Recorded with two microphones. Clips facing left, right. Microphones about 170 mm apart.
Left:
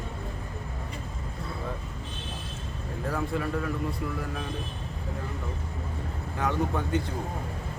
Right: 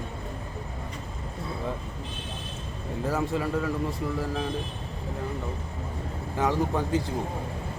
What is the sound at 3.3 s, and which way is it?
Speech, 20° right (ahead or behind).